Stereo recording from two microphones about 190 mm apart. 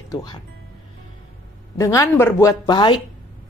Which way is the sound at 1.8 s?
15° left (ahead or behind).